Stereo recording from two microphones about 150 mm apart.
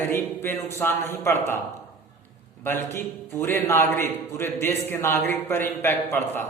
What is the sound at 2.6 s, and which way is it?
A woman's voice, 15° left (ahead or behind).